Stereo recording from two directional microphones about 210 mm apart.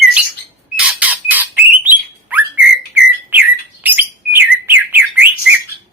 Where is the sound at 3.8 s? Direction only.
10° right (ahead or behind).